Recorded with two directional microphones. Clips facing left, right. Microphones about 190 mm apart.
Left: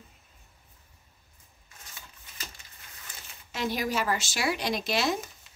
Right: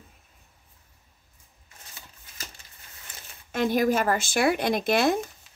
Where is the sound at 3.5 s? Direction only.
50° right (ahead or behind).